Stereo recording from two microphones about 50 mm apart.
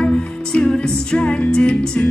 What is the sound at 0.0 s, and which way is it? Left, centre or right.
Music, left.